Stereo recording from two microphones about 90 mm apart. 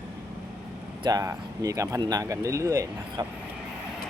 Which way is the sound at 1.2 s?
35° right (ahead or behind).